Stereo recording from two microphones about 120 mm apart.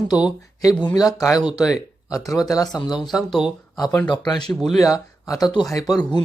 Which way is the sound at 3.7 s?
30° left (ahead or behind).